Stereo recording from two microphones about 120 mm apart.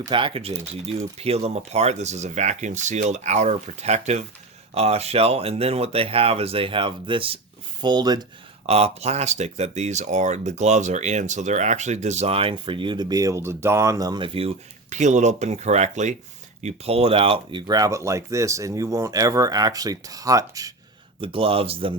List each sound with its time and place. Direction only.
0.1 s speech: 45° right (ahead or behind)
8.6 s speech: 60° right (ahead or behind); by 14.3 s 35° right (ahead or behind)
14.8 s speech: 90° right; by 16.1 s 70° right (ahead or behind)
16.6 s speech: 55° right (ahead or behind)
17.7 s speech: 30° right (ahead or behind)
21.2 s speech: 50° right (ahead or behind)